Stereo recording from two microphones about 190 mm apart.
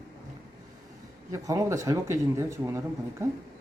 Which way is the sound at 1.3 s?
15° right (ahead or behind).